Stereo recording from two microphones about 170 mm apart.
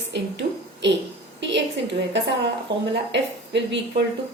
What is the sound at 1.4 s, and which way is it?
Speech, 90° right.